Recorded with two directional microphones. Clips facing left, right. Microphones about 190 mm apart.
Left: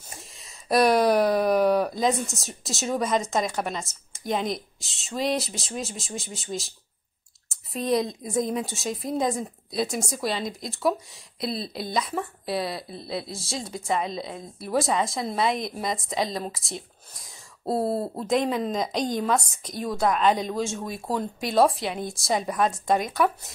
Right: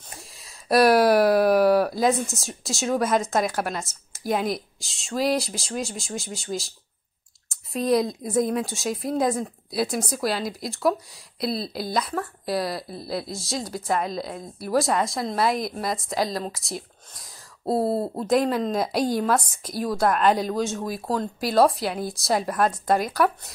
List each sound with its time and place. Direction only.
0.1 s speech: centre (ahead or behind)